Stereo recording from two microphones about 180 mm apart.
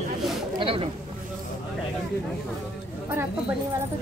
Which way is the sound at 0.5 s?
30° right (ahead or behind).